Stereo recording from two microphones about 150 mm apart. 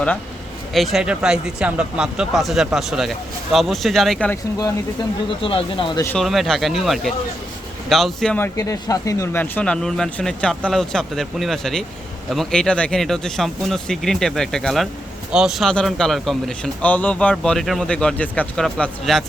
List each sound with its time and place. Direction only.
0.7 s speech: centre (ahead or behind)
5.4 s speech: 35° left (ahead or behind)
6.1 s speech: centre (ahead or behind)
8.4 s speech: 20° left (ahead or behind); by 19.2 s centre (ahead or behind)